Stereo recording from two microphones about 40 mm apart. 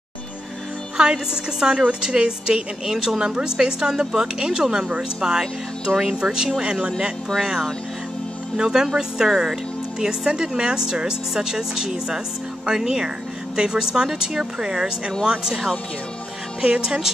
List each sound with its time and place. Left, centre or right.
0.9 s a woman's voice: centre
16.6 s a woman's voice: right